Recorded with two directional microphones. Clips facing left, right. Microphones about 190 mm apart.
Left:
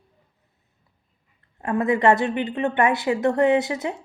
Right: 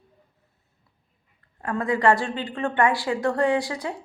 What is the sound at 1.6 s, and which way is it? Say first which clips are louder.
A woman's voice: left 3 dB; 20° left (ahead or behind).